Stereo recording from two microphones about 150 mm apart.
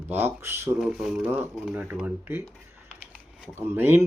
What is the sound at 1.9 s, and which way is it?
Speech, 15° right (ahead or behind).